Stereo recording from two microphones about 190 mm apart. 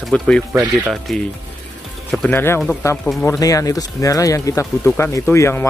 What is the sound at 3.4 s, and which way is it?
Speech, 20° left (ahead or behind).